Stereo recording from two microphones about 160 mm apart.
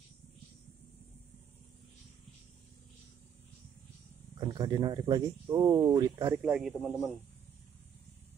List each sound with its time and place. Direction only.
4.4 s speech: 25° right (ahead or behind)
6.3 s a man's voice: 5° right (ahead or behind)